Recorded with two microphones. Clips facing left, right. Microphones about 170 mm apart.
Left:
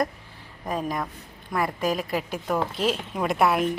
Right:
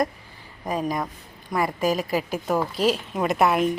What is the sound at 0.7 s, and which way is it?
Speech, centre (ahead or behind).